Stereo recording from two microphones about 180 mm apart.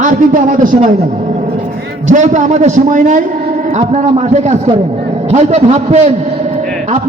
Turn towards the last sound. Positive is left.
turn(degrees=-35)  # may be behind; listen again after turning